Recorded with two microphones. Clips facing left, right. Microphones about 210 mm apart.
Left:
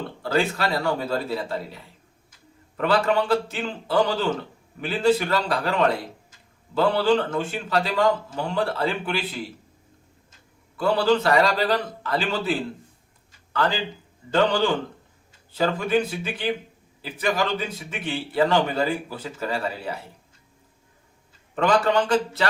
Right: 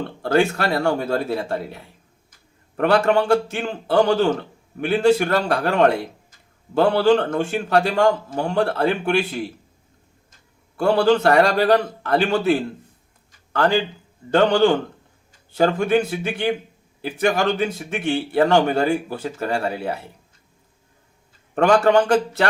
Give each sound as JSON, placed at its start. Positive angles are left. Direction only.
{"t": 0.2, "sound": "a man's voice", "side_deg": -55}
{"t": 4.8, "sound": "a man's voice", "side_deg": -65}
{"t": 5.1, "sound": "a man's voice", "side_deg": -55}
{"t": 10.8, "sound": "a man's voice", "side_deg": -60}
{"t": 13.5, "sound": "a man's voice", "side_deg": -60}
{"t": 15.9, "sound": "a man's voice", "side_deg": -60}
{"t": 18.0, "sound": "a man's voice", "side_deg": -65}
{"t": 18.5, "sound": "a man's voice", "side_deg": -50}
{"t": 21.5, "sound": "a man's voice", "side_deg": -60}